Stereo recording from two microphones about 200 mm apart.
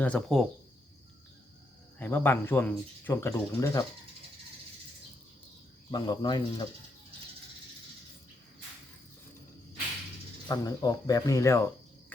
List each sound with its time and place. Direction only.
0.0 s speech: 5° left (ahead or behind)
2.0 s speech: 10° left (ahead or behind)
5.9 s speech: 20° left (ahead or behind)
10.5 s speech: 20° left (ahead or behind)